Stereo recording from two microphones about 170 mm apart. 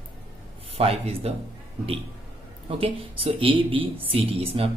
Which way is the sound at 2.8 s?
35° right (ahead or behind).